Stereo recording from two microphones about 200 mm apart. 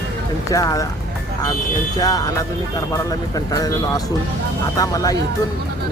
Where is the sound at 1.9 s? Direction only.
20° left (ahead or behind).